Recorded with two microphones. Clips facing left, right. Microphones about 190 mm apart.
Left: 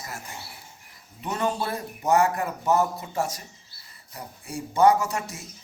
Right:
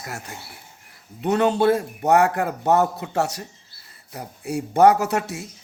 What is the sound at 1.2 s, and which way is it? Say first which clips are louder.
Speech: right 9 dB; 65° right (ahead or behind).